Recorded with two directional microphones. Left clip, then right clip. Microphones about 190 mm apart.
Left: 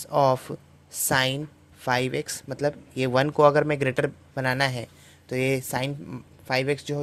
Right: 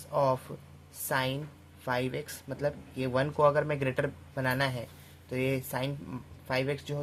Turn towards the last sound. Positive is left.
turn(degrees=35)  # may be behind; listen again after turning